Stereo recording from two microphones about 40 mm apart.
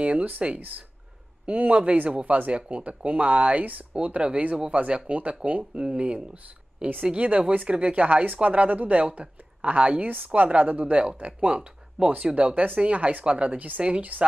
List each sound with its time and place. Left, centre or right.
0.0 s speech: right
0.6 s a woman's voice: right
10.0 s a woman's voice: right